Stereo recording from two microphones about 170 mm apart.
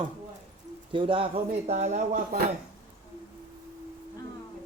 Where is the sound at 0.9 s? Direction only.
30° right (ahead or behind).